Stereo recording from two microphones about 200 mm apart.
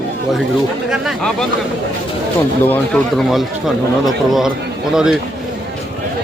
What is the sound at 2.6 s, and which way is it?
A man's voice, 5° left (ahead or behind).